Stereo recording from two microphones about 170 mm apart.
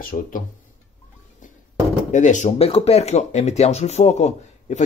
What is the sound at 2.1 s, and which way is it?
Speech, 45° left (ahead or behind).